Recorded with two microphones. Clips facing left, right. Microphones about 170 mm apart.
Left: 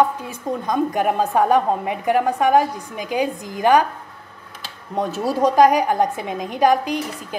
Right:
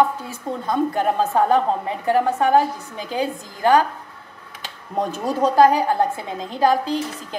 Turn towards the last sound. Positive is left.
turn(degrees=15)  # may be behind; listen again after turning